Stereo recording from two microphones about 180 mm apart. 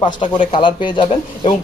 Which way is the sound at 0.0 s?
30° left (ahead or behind).